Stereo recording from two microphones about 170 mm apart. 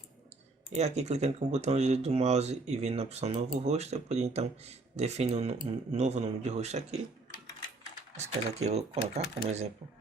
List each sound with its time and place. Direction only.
0.7 s speech: 40° right (ahead or behind)
8.1 s speech: 40° right (ahead or behind)